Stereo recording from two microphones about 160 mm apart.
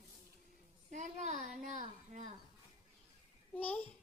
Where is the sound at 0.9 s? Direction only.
50° right (ahead or behind).